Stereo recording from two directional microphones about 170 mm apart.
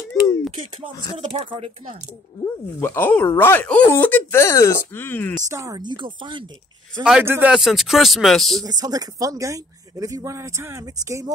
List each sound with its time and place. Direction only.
1.1 s speech: 30° right (ahead or behind)
2.4 s speech: 10° left (ahead or behind)
5.5 s speech: 20° right (ahead or behind)
7.1 s a man's voice: 10° right (ahead or behind)
8.6 s speech: 20° right (ahead or behind)